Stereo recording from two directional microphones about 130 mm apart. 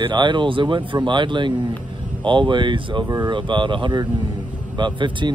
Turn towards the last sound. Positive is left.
turn(degrees=-35)  # may be behind; listen again after turning